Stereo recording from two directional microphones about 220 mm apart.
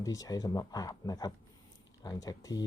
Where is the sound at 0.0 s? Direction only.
15° left (ahead or behind).